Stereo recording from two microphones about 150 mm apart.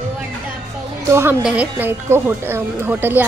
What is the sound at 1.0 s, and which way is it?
A woman's voice, 15° right (ahead or behind).